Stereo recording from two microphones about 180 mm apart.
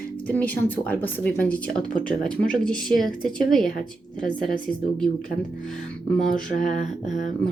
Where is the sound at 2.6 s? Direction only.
5° left (ahead or behind).